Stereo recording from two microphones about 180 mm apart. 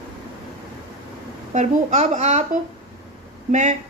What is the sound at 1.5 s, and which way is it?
A woman's voice, 40° right (ahead or behind).